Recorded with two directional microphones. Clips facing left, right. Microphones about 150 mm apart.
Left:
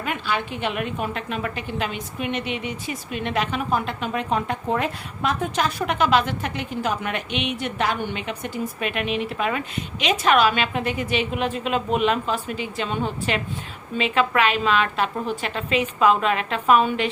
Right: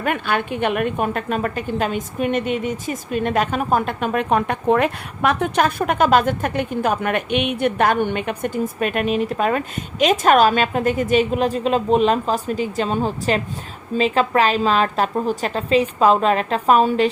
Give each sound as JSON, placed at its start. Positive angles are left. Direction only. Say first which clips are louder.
{"t": 0.0, "sound": "a woman's voice", "louder": "right 5 dB", "side_deg": -55}